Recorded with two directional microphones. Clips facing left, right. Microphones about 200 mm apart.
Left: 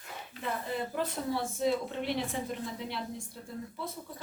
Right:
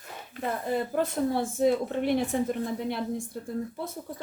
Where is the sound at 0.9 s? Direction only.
50° right (ahead or behind).